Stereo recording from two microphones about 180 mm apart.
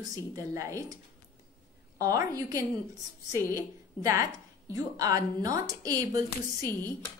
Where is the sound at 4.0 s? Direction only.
20° right (ahead or behind).